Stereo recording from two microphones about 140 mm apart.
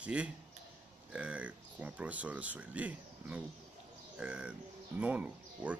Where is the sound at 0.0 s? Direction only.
10° right (ahead or behind).